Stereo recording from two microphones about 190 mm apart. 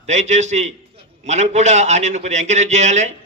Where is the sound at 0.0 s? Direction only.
40° right (ahead or behind).